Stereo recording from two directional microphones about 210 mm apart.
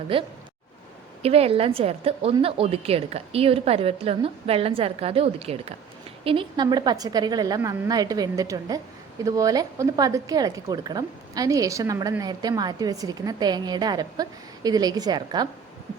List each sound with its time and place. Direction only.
0.1 s a woman's voice: 25° right (ahead or behind)